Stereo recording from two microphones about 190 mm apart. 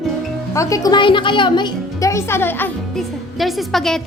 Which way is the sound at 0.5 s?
15° left (ahead or behind).